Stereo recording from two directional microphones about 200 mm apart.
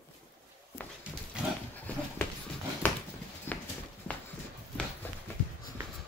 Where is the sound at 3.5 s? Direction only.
10° left (ahead or behind).